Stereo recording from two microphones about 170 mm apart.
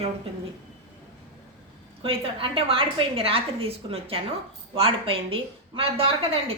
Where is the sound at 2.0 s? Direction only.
30° right (ahead or behind).